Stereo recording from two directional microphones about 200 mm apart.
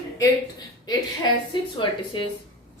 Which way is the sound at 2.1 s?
25° left (ahead or behind).